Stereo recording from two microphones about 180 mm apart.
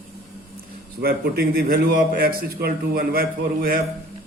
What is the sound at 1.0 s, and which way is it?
A man's voice, 55° right (ahead or behind).